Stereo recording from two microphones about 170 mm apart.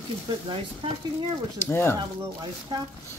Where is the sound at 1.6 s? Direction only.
10° left (ahead or behind).